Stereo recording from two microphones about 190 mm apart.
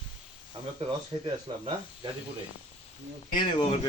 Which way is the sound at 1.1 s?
30° right (ahead or behind).